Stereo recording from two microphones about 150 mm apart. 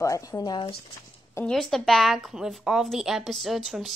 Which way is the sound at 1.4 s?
20° left (ahead or behind).